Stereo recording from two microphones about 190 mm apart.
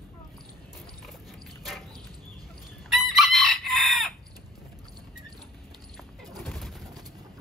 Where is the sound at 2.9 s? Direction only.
Centre (ahead or behind).